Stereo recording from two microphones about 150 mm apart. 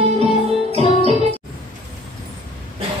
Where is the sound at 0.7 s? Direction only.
45° right (ahead or behind).